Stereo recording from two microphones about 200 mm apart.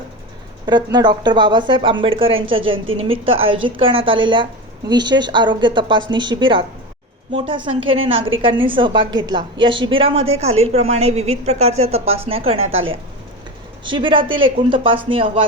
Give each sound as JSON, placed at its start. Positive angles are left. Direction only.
{"t": 0.9, "sound": "a woman's voice", "side_deg": -20}
{"t": 13.8, "sound": "a woman's voice", "side_deg": -25}